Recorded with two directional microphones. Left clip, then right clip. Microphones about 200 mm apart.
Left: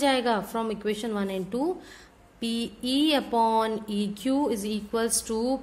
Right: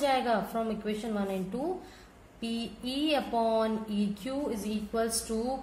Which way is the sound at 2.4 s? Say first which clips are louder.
Left 5 dB; 50° left (ahead or behind).